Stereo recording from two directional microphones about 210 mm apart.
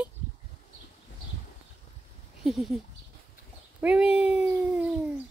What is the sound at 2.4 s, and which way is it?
Speech, centre (ahead or behind).